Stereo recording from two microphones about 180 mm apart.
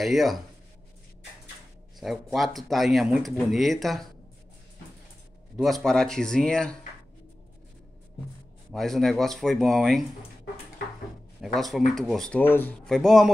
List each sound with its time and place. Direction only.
0.0 s speech: centre (ahead or behind)
2.0 s speech: centre (ahead or behind)
5.6 s speech: centre (ahead or behind)
8.7 s speech: centre (ahead or behind)
11.4 s speech: centre (ahead or behind)